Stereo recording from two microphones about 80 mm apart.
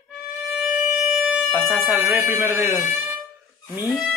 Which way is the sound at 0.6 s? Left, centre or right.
Centre.